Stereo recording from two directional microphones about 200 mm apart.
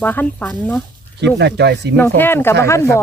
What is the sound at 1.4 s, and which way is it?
Speech, 55° right (ahead or behind).